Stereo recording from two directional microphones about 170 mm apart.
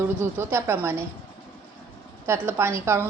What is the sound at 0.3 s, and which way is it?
Speech, 15° right (ahead or behind).